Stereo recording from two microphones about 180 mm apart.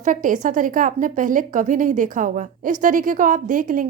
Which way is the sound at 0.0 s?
45° right (ahead or behind).